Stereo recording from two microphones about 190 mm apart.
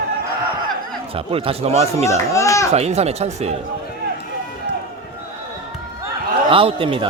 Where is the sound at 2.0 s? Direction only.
15° left (ahead or behind).